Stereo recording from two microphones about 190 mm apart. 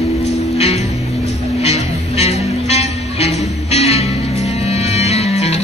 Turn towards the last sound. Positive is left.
turn(degrees=35)  # may be behind; listen again after turning